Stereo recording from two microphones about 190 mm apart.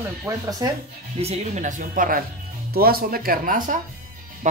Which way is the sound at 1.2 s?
35° right (ahead or behind).